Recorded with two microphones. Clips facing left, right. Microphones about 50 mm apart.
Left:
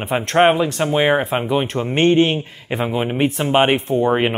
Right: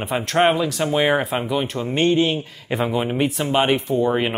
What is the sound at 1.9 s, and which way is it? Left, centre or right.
Speech, left.